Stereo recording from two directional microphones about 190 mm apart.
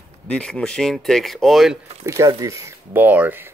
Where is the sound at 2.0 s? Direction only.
15° right (ahead or behind).